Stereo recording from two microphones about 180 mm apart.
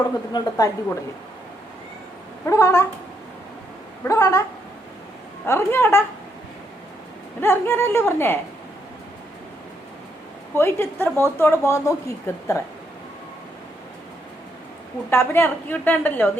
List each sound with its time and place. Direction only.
0.3 s a woman's voice: 20° left (ahead or behind)
2.5 s a woman's voice: 15° left (ahead or behind)
4.0 s a woman's voice: 15° left (ahead or behind)
5.5 s a woman's voice: 15° left (ahead or behind)
7.4 s a woman's voice: 10° left (ahead or behind)
10.5 s a woman's voice: 15° left (ahead or behind)
15.1 s a woman's voice: 15° left (ahead or behind)